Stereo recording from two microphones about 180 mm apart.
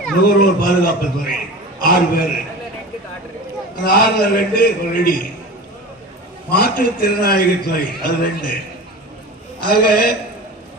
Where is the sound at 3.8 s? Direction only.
55° left (ahead or behind).